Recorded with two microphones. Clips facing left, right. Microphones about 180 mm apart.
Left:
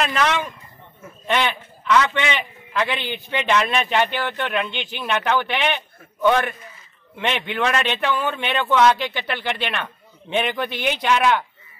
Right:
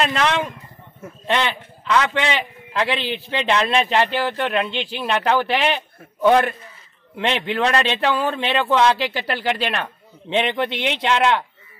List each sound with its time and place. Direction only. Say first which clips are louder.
1.9 s a man's voice: even; 35° right (ahead or behind)
10.3 s speech: right 2 dB; 25° right (ahead or behind)